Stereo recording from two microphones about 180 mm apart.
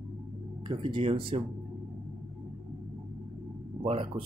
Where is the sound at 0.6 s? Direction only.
25° right (ahead or behind).